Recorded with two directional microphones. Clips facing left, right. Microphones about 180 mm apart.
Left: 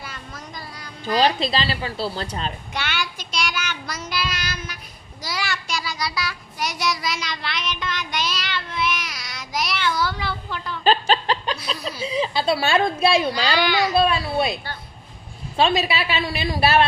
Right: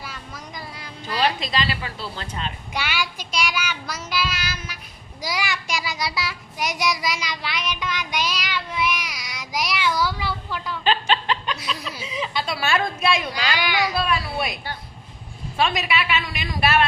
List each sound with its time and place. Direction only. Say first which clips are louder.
0.0 s child singing: even; 5° right (ahead or behind)
1.0 s a woman's voice: left 4 dB; 30° left (ahead or behind)
2.7 s child singing: right 4 dB; 10° right (ahead or behind)
10.8 s a woman's voice: left 3 dB; 40° left (ahead or behind)
13.6 s child singing: left 4 dB; 15° right (ahead or behind)
13.9 s a woman's voice: left 5 dB; 25° left (ahead or behind)